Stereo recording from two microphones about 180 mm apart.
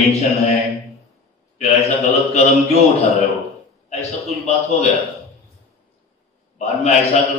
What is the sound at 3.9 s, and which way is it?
A man's voice, 35° left (ahead or behind).